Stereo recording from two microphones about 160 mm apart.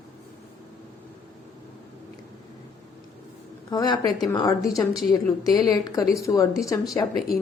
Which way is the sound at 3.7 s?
25° left (ahead or behind).